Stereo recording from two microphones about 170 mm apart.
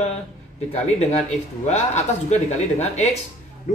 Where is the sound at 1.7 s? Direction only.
40° left (ahead or behind).